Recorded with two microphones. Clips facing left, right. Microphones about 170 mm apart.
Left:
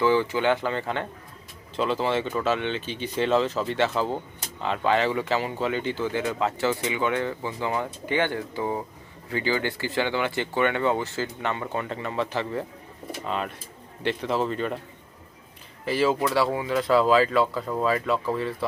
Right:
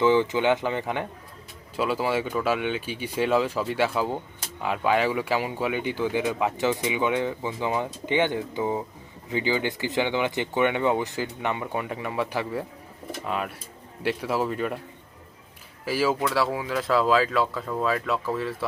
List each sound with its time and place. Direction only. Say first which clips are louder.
0.0 s speech: right 1 dB; 20° right (ahead or behind)
15.8 s speech: left 1 dB; 5° right (ahead or behind)